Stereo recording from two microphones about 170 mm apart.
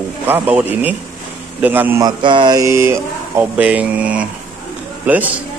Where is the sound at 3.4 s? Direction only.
10° right (ahead or behind).